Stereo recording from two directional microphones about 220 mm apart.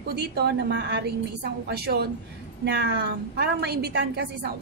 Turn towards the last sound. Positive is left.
turn(degrees=-45)  # may be behind; listen again after turning